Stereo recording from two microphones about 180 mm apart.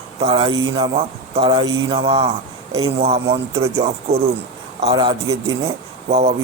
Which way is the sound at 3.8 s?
35° right (ahead or behind).